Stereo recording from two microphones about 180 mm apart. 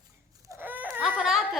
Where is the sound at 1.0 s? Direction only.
Centre (ahead or behind).